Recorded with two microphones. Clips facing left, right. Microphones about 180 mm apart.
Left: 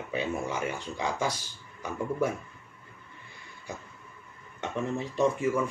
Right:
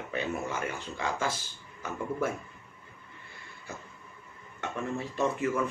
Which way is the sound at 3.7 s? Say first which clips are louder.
Left 3 dB; 15° left (ahead or behind).